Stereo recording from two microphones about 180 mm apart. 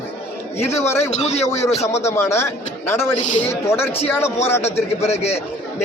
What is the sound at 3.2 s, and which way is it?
Speech, 45° left (ahead or behind).